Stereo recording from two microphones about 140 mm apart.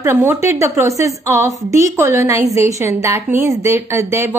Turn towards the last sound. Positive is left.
turn(degrees=-20)  # may be behind; listen again after turning